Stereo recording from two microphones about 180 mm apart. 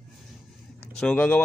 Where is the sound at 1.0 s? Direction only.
5° left (ahead or behind).